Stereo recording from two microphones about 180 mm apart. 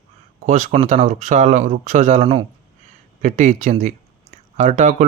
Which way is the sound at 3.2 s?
40° right (ahead or behind).